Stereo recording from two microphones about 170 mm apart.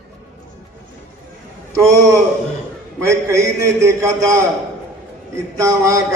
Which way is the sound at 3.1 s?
15° right (ahead or behind).